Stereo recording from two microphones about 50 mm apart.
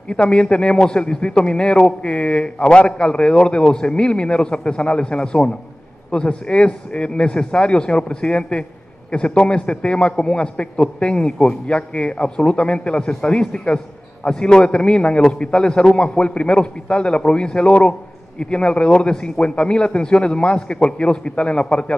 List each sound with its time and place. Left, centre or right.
0.1 s a man's voice: left